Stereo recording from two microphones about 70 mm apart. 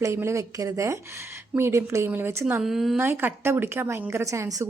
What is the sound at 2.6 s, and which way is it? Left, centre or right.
Speech, centre.